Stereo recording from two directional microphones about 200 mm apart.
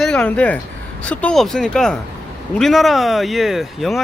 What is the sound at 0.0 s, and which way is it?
Speech, 5° left (ahead or behind).